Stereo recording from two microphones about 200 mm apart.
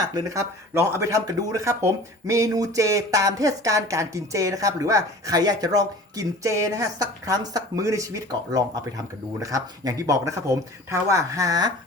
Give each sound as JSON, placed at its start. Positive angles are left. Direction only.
{"t": 0.3, "sound": "speech", "side_deg": -15}